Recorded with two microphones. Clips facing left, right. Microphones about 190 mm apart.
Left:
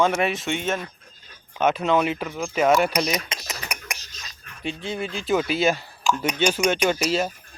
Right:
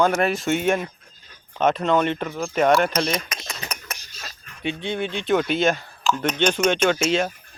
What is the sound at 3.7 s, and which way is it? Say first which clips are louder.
Whispering: even; 10° left (ahead or behind).